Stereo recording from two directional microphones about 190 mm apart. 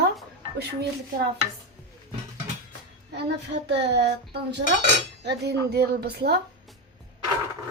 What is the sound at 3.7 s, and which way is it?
Speech, 65° right (ahead or behind).